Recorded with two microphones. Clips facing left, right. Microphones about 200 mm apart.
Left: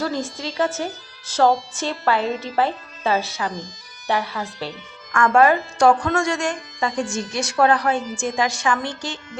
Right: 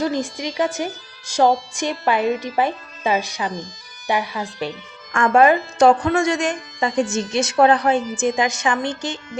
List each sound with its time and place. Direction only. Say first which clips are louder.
0.0 s a woman's voice: right 3 dB; 15° right (ahead or behind)